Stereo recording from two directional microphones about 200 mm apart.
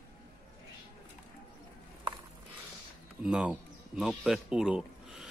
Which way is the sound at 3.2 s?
5° right (ahead or behind).